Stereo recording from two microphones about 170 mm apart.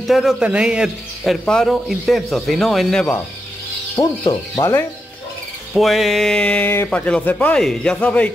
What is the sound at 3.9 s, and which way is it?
Speech, 20° left (ahead or behind).